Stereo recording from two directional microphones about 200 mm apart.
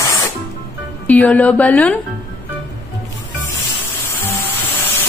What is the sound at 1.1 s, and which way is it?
Speech, 5° left (ahead or behind).